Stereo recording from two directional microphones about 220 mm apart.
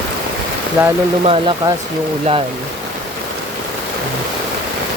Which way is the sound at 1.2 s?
25° right (ahead or behind).